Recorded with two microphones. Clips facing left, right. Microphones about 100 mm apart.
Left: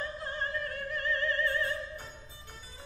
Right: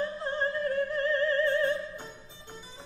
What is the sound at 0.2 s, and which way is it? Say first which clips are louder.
Opera: right 6 dB; 30° right (ahead or behind).